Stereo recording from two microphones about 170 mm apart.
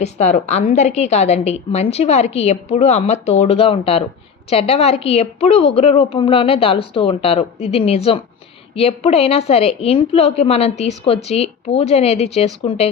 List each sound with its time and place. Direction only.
0.0 s a woman's voice: 45° left (ahead or behind)